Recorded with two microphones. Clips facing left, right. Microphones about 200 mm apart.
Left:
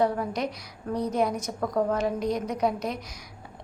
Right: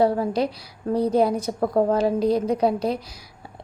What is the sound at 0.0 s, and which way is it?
A woman's voice, 30° right (ahead or behind).